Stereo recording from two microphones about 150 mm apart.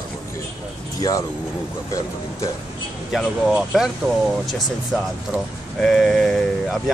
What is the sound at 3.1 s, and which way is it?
Speech, 5° right (ahead or behind).